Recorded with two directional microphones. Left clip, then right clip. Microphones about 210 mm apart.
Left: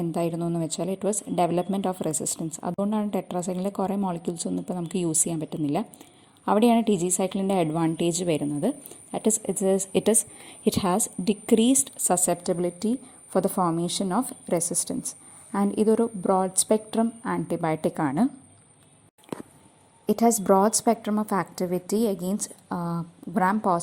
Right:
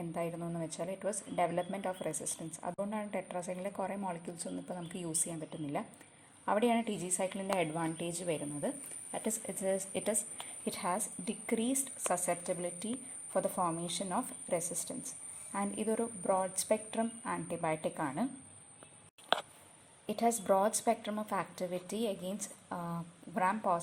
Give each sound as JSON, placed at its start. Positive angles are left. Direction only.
{"t": 0.0, "sound": "a woman's voice", "side_deg": 45}
{"t": 20.1, "sound": "a woman's voice", "side_deg": 35}